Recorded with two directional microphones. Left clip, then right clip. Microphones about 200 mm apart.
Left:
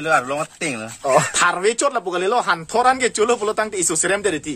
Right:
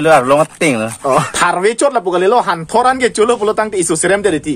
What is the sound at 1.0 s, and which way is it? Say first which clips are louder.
Speech: right 1 dB; 5° right (ahead or behind).